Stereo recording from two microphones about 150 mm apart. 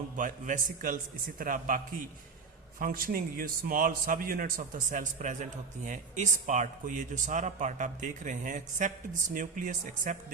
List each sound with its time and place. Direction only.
0.2 s a man's voice: 60° right (ahead or behind)